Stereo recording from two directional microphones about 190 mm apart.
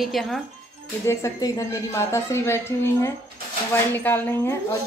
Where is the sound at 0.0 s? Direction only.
Centre (ahead or behind).